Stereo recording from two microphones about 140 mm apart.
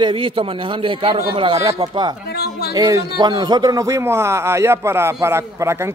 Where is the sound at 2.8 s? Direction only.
25° right (ahead or behind).